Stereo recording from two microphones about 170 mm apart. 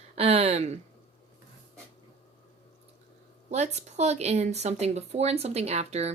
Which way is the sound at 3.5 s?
40° right (ahead or behind).